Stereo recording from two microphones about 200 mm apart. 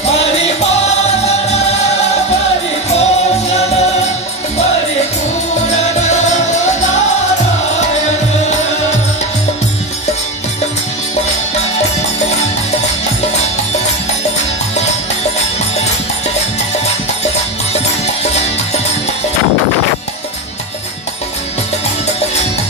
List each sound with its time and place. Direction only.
2.9 s music: 35° left (ahead or behind)